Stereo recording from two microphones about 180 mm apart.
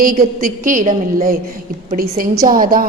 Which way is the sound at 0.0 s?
50° right (ahead or behind).